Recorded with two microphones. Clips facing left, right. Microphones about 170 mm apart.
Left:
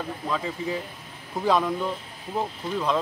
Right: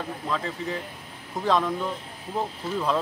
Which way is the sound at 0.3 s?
5° left (ahead or behind).